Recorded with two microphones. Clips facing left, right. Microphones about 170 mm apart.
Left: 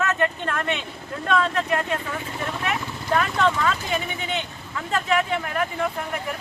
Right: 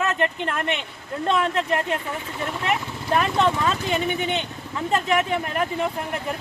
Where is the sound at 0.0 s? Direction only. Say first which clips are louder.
Even; 20° right (ahead or behind).